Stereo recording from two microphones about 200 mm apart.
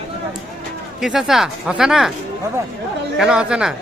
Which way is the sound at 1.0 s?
Centre (ahead or behind).